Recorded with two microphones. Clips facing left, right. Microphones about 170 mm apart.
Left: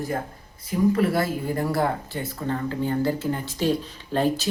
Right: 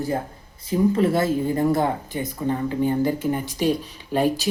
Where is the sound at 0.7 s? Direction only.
25° right (ahead or behind).